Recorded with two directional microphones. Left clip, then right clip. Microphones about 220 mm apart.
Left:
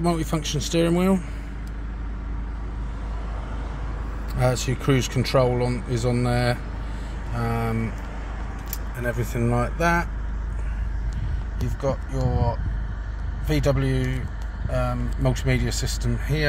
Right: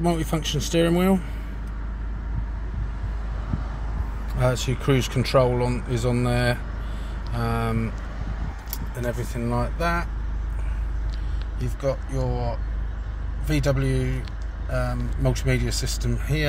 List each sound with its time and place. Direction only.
0.0 s speech: centre (ahead or behind)
4.4 s speech: 5° left (ahead or behind)
9.0 s speech: 15° left (ahead or behind)
11.8 s speech: centre (ahead or behind)
13.5 s speech: centre (ahead or behind)